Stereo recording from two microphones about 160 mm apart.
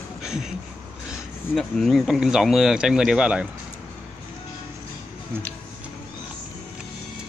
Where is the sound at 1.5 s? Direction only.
Centre (ahead or behind).